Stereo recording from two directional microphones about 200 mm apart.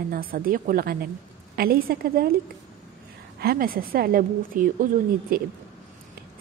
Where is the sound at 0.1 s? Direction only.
45° right (ahead or behind).